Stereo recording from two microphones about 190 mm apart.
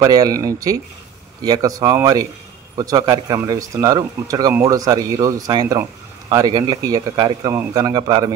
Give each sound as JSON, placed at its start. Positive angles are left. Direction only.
{"t": 0.0, "sound": "speech", "side_deg": -20}